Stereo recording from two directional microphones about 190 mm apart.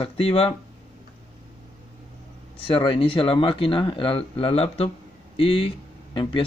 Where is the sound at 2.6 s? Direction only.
30° left (ahead or behind).